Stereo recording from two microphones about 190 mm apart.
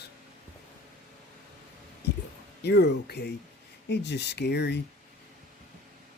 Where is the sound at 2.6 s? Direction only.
60° left (ahead or behind).